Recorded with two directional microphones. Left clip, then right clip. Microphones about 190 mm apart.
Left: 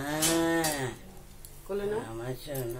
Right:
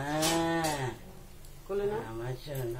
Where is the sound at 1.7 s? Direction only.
30° left (ahead or behind).